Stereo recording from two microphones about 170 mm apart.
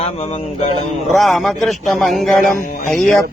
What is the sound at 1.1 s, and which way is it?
Music, centre (ahead or behind).